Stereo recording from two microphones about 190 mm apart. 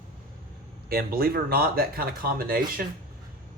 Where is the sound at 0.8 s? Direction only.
55° right (ahead or behind).